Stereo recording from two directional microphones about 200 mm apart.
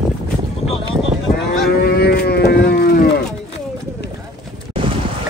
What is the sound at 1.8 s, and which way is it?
Moo, 55° left (ahead or behind).